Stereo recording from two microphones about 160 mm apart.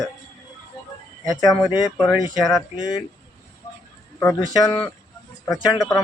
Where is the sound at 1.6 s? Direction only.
25° left (ahead or behind).